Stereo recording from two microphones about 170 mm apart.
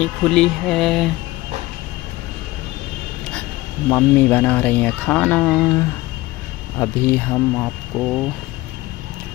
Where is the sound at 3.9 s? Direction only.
10° left (ahead or behind).